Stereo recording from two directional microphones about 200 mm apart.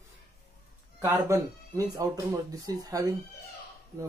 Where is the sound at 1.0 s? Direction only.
15° right (ahead or behind).